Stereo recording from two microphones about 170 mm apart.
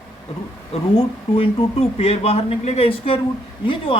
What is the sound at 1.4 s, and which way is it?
Speech, 35° left (ahead or behind).